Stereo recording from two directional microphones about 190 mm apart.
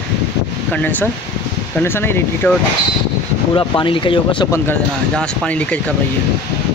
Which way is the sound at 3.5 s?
25° left (ahead or behind).